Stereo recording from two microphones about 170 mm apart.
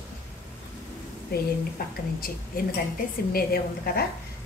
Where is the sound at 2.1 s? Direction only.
60° left (ahead or behind).